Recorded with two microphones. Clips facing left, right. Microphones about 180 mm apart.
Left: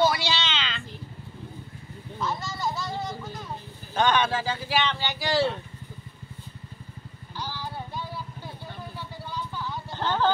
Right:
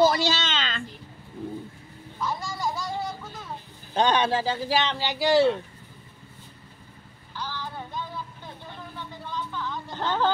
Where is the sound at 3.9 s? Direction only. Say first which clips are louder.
Right 1 dB; 30° right (ahead or behind).